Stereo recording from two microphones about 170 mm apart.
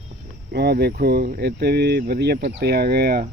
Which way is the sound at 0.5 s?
70° right (ahead or behind).